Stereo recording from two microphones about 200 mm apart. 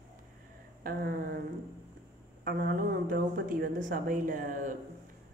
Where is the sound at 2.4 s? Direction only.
45° right (ahead or behind).